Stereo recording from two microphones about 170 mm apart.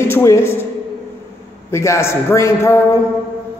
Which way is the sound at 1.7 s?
15° left (ahead or behind).